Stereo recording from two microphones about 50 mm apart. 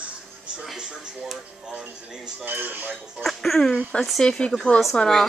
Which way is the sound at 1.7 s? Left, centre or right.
Centre.